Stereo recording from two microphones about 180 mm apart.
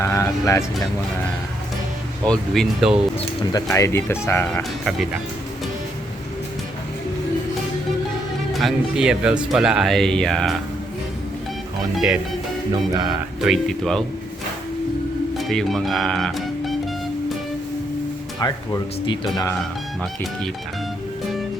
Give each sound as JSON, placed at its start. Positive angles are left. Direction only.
{"t": 0.0, "sound": "speech", "side_deg": 15}
{"t": 2.2, "sound": "speech", "side_deg": 5}
{"t": 3.5, "sound": "speech", "side_deg": 15}
{"t": 8.5, "sound": "speech", "side_deg": 0}
{"t": 13.4, "sound": "speech", "side_deg": 0}
{"t": 15.4, "sound": "speech", "side_deg": 0}
{"t": 18.3, "sound": "speech", "side_deg": 20}